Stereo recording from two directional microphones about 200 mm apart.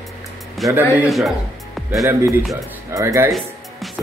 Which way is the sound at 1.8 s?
10° right (ahead or behind).